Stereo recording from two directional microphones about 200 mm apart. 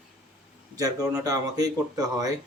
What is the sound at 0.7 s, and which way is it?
Speech, 15° right (ahead or behind).